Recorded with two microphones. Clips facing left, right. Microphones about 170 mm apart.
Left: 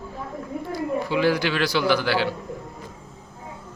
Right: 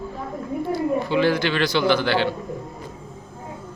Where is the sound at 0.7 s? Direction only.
10° left (ahead or behind).